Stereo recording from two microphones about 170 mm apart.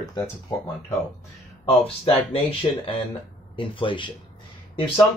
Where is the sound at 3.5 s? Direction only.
30° left (ahead or behind).